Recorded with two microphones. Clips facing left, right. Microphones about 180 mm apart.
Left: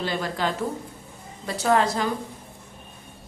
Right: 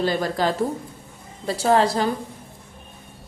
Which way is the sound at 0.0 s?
40° right (ahead or behind).